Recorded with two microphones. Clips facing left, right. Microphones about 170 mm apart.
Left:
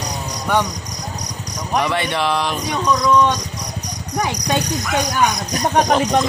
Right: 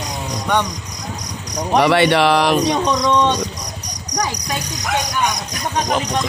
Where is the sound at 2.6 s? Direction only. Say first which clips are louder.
Right 1 dB; 30° right (ahead or behind).